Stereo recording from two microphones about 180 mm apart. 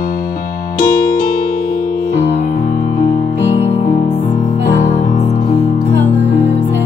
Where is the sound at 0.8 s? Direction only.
55° left (ahead or behind).